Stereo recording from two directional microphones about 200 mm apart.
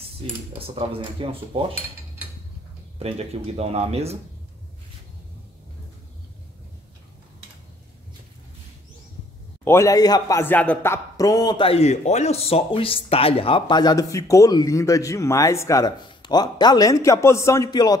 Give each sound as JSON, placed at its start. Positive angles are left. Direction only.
{"t": 0.6, "sound": "speech", "side_deg": -30}
{"t": 3.0, "sound": "speech", "side_deg": -30}
{"t": 9.7, "sound": "a man's voice", "side_deg": 15}